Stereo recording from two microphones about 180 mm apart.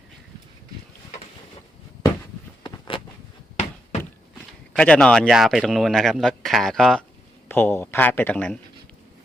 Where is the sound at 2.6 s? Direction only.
30° left (ahead or behind).